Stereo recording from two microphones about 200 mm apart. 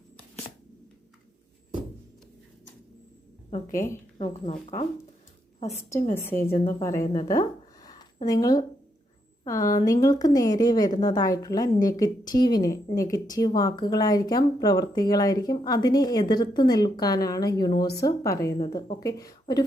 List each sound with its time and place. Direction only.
3.5 s a woman's voice: 40° left (ahead or behind)
6.2 s a woman's voice: 10° left (ahead or behind)
7.3 s a sound: 20° left (ahead or behind)
9.4 s speech: 15° left (ahead or behind)